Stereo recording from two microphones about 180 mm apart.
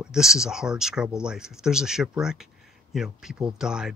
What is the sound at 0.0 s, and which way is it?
Speech, 5° right (ahead or behind).